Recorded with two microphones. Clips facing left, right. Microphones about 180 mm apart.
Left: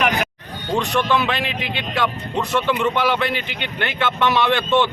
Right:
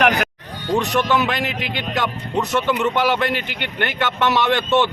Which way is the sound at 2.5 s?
15° right (ahead or behind).